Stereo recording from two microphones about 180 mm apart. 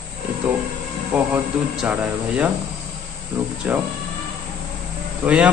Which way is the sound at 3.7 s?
10° right (ahead or behind).